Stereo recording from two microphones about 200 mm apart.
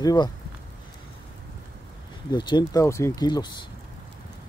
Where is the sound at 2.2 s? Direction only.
20° left (ahead or behind).